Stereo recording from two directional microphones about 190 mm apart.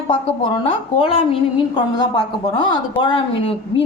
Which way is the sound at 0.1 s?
25° left (ahead or behind).